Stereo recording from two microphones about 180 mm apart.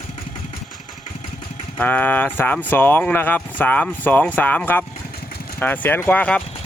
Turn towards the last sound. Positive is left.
turn(degrees=10)  # may be behind; listen again after turning